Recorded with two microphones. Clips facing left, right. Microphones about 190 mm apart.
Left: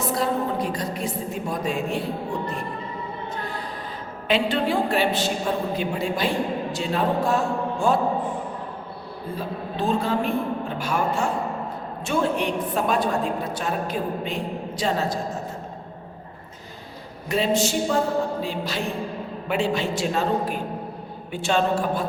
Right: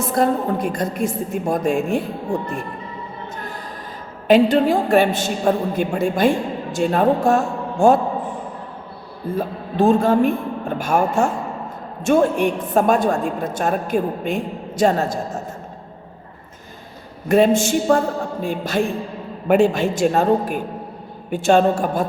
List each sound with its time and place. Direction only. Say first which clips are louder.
0.1 s a woman's voice: right 7 dB; 50° right (ahead or behind)
4.3 s a woman's voice: right 8 dB; 45° right (ahead or behind)
9.3 s a woman's voice: right 6 dB; 45° right (ahead or behind)
17.2 s a woman's voice: right 7 dB; 50° right (ahead or behind)